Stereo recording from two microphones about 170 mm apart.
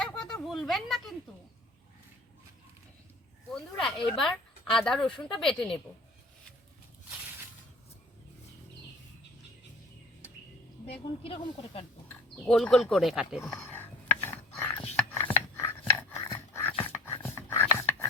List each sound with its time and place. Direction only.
0.0 s a sound: 5° left (ahead or behind)
3.5 s speech: 5° left (ahead or behind)
10.8 s speech: 35° left (ahead or behind)
12.0 s speech: 5° left (ahead or behind)
13.4 s a sound: 15° left (ahead or behind)
16.8 s dog: 15° left (ahead or behind)